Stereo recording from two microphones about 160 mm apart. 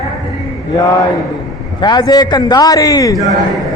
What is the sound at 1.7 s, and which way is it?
A man's voice, 25° left (ahead or behind).